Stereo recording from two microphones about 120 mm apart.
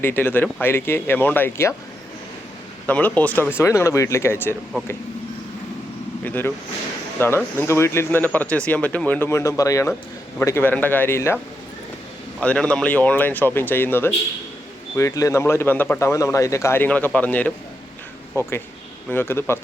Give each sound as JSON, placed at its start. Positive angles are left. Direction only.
{"t": 0.0, "sound": "speech", "side_deg": 15}
{"t": 2.8, "sound": "speech", "side_deg": 15}
{"t": 3.6, "sound": "speech", "side_deg": 25}
{"t": 6.2, "sound": "speech", "side_deg": 15}
{"t": 12.4, "sound": "speech", "side_deg": 10}
{"t": 18.3, "sound": "speech", "side_deg": 25}